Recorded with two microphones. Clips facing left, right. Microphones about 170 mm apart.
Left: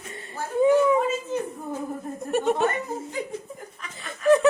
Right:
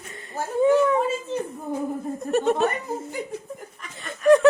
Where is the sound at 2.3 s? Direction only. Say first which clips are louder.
Right 1 dB; 10° left (ahead or behind).